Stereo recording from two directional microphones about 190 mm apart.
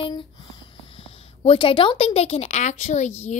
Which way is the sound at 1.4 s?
30° left (ahead or behind).